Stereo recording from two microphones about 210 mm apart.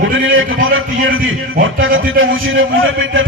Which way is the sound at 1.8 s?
70° right (ahead or behind).